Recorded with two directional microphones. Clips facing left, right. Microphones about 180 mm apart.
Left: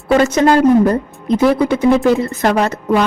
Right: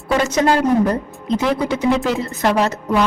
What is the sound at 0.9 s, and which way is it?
A woman's voice, 55° left (ahead or behind).